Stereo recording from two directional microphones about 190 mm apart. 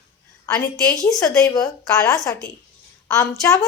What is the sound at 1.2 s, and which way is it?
Speech, 20° left (ahead or behind).